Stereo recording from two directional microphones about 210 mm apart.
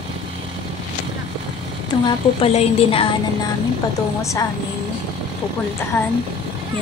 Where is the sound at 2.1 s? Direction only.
25° left (ahead or behind).